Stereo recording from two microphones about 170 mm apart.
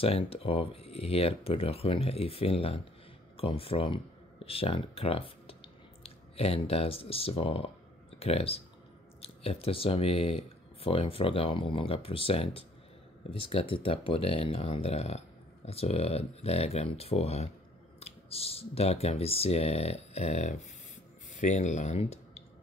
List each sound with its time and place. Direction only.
0.0 s speech: 35° left (ahead or behind)